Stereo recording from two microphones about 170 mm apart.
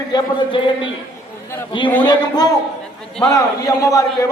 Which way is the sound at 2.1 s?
25° left (ahead or behind).